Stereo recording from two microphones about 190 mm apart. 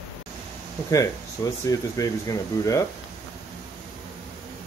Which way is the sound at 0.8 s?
15° left (ahead or behind).